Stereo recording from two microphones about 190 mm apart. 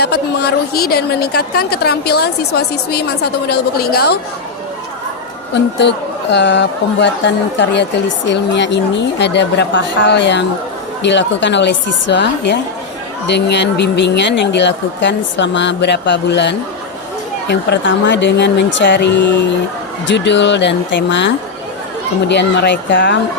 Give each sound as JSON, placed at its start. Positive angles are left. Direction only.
{"t": 0.0, "sound": "a woman's voice", "side_deg": 60}
{"t": 5.8, "sound": "a woman's voice", "side_deg": 65}